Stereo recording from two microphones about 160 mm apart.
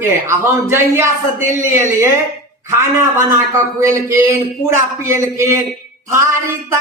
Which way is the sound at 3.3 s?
15° right (ahead or behind).